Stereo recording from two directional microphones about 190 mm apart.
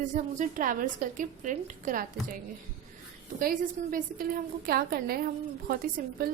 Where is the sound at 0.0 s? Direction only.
45° right (ahead or behind).